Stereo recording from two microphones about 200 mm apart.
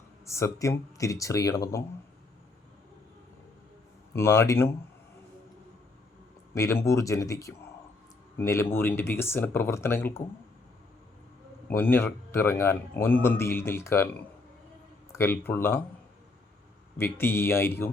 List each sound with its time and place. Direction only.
0.3 s a man's voice: 15° left (ahead or behind)
4.1 s a man's voice: 15° left (ahead or behind)
6.5 s a man's voice: 15° left (ahead or behind)
11.7 s a man's voice: 10° left (ahead or behind)
15.1 s a man's voice: 10° left (ahead or behind)
17.0 s a man's voice: 10° left (ahead or behind)